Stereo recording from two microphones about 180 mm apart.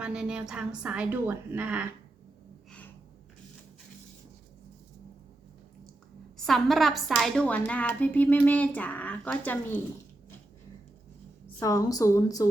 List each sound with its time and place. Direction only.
0.0 s a woman's voice: 5° right (ahead or behind)
2.6 s gasp: 10° left (ahead or behind)
6.3 s a woman's voice: centre (ahead or behind)
11.6 s a woman's voice: 20° left (ahead or behind)